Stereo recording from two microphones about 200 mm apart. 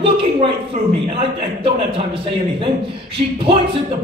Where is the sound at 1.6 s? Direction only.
25° right (ahead or behind).